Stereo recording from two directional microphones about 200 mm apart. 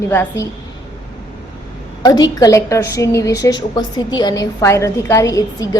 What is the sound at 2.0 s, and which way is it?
A woman's voice, 20° left (ahead or behind).